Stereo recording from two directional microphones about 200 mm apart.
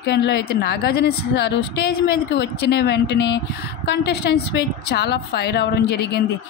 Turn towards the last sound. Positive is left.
turn(degrees=55)  # may be behind; listen again after turning